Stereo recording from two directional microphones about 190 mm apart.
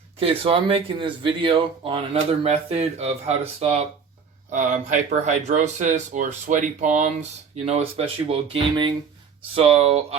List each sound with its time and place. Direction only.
0.2 s speech: 30° right (ahead or behind)